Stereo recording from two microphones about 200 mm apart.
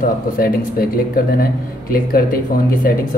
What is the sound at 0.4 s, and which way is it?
Speech, 45° left (ahead or behind).